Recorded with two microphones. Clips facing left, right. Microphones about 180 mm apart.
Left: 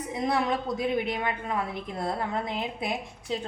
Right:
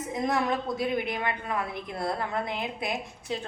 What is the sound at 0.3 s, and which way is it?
A woman's voice, 15° left (ahead or behind).